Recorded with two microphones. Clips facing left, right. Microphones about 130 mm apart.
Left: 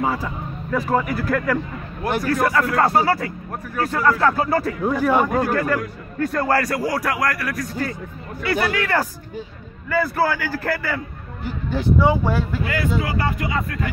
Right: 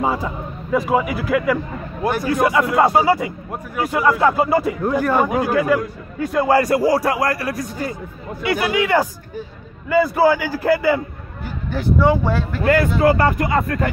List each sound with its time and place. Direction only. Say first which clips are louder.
0.0 s speech: right 2 dB; 25° right (ahead or behind)
0.7 s a man's voice: right 3 dB; 10° right (ahead or behind)
4.8 s a man's voice: right 1 dB; centre (ahead or behind)
6.6 s speech: right 6 dB; 25° right (ahead or behind)
8.4 s a man's voice: right 3 dB; 15° right (ahead or behind)
11.7 s speech: right 1 dB; 15° left (ahead or behind)
12.6 s speech: right 14 dB; 50° right (ahead or behind)